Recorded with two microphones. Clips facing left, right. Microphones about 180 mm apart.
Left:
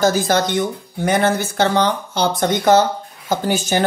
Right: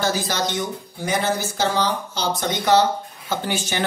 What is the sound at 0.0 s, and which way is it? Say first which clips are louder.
Speech: left 7 dB; 50° left (ahead or behind).